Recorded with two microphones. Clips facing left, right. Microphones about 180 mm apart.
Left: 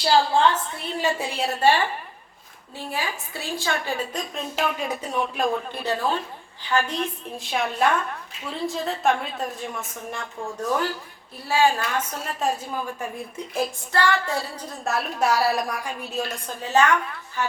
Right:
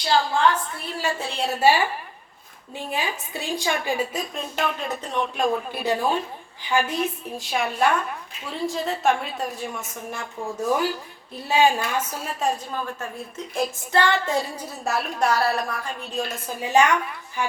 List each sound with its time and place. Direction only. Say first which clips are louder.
0.0 s a woman's voice: left 2 dB; 30° left (ahead or behind)
0.9 s a woman's voice: left 2 dB; 20° left (ahead or behind)
1.3 s a woman's voice: right 2 dB; centre (ahead or behind)
2.7 s a woman's voice: right 2 dB; 20° right (ahead or behind); by 5.6 s 5° left (ahead or behind)
5.7 s a woman's voice: right 2 dB; 15° right (ahead or behind); by 13.7 s 10° left (ahead or behind)
13.9 s a woman's voice: right 2 dB; 20° right (ahead or behind)